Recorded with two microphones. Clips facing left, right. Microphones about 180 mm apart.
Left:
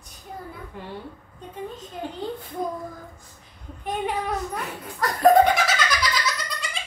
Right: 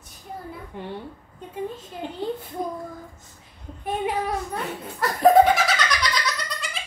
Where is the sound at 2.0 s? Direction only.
20° right (ahead or behind).